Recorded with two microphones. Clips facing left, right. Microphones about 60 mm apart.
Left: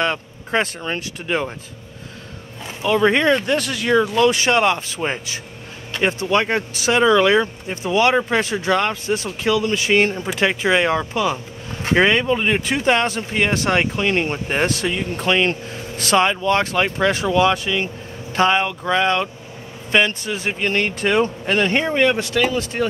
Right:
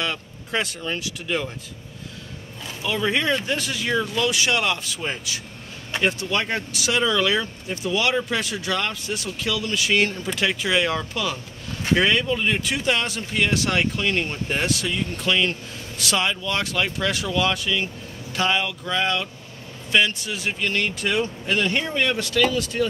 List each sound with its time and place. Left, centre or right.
0.0 s speech: left
2.8 s speech: left
4.2 s speech: left